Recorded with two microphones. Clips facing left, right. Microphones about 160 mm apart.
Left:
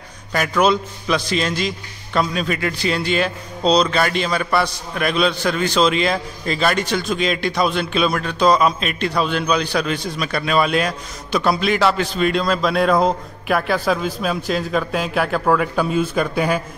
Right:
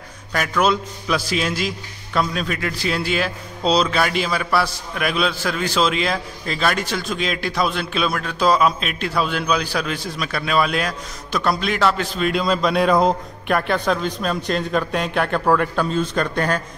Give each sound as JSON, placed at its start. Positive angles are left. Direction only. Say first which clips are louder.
{"t": 0.3, "sound": "a man's voice", "louder": "left 2 dB", "side_deg": 0}